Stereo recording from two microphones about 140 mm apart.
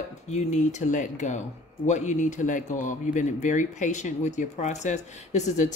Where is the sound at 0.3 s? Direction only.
55° left (ahead or behind).